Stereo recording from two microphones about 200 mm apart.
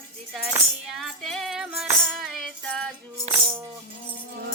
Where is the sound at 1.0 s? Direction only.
Centre (ahead or behind).